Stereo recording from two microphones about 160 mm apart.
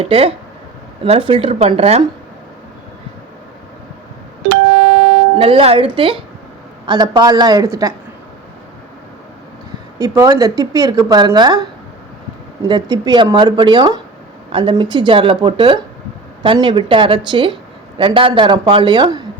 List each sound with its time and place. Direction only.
0.0 s speech: 35° right (ahead or behind)
5.4 s speech: 35° right (ahead or behind)
10.0 s speech: 20° right (ahead or behind)
12.6 s speech: 25° right (ahead or behind)